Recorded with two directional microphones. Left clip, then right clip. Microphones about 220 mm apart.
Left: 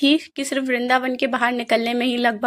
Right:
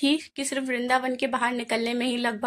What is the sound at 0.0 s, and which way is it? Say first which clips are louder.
A woman's voice: left 6 dB; 10° left (ahead or behind).